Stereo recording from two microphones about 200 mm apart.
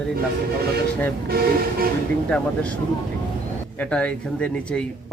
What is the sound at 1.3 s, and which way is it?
Speech, 50° right (ahead or behind).